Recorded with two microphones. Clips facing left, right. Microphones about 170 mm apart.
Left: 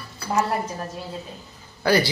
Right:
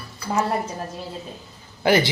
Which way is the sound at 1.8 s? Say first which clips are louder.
Right 1 dB; 20° right (ahead or behind).